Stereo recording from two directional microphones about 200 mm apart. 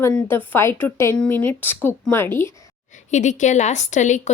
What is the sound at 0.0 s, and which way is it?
Speech, 10° left (ahead or behind).